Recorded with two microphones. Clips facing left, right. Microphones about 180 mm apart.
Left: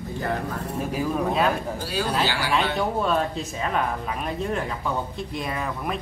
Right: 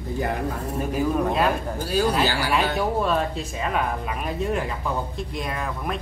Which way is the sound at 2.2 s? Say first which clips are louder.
Right 2 dB; 40° right (ahead or behind).